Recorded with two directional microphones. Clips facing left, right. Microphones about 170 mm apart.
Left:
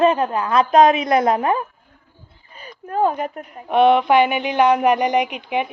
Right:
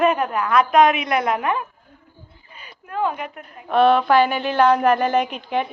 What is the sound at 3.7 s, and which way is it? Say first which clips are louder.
A woman's voice: left 1 dB; 20° left (ahead or behind).